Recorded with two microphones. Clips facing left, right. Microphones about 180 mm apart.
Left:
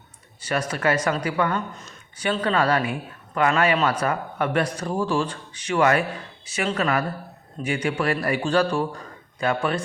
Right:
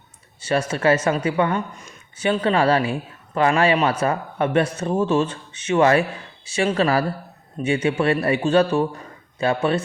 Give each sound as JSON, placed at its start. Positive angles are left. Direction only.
{"t": 0.7, "sound": "speech", "side_deg": -25}